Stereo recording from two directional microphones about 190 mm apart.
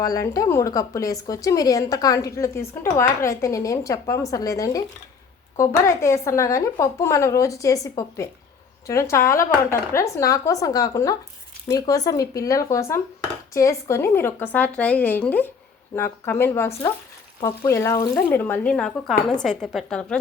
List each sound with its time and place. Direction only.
0.0 s a woman's voice: 15° left (ahead or behind)